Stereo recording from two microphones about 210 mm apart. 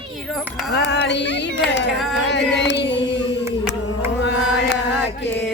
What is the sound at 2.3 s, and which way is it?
Chant, 55° left (ahead or behind).